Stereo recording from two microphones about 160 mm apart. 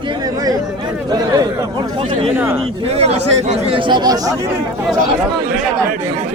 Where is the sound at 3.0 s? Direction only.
40° right (ahead or behind); by 4.3 s 25° right (ahead or behind).